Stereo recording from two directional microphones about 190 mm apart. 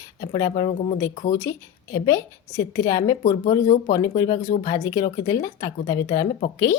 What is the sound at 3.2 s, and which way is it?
Speech, 45° left (ahead or behind).